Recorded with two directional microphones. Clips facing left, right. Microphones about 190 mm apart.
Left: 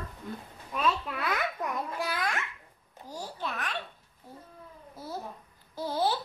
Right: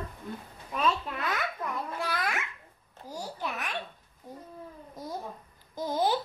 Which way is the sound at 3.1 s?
10° right (ahead or behind).